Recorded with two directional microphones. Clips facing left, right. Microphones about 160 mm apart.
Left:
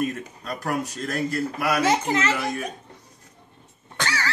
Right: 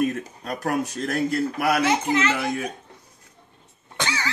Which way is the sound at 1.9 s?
40° left (ahead or behind).